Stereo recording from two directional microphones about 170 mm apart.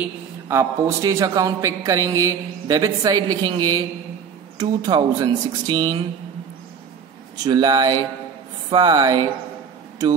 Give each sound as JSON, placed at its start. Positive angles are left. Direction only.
{"t": 0.0, "sound": "a man's voice", "side_deg": -15}
{"t": 7.4, "sound": "a man's voice", "side_deg": -25}